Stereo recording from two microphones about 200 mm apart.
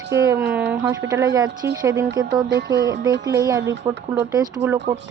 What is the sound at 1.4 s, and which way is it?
Music, 60° right (ahead or behind).